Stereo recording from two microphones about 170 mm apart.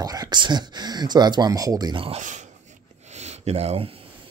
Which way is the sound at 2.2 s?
45° right (ahead or behind).